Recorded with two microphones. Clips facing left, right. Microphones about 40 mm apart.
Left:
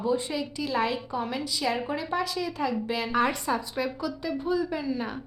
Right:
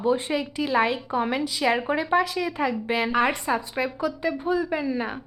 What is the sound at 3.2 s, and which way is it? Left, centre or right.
A woman's voice, right.